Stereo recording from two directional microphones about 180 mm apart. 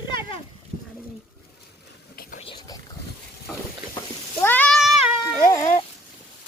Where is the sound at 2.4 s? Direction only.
25° left (ahead or behind).